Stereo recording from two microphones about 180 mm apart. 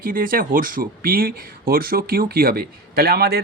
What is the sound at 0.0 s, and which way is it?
Speech, 50° right (ahead or behind).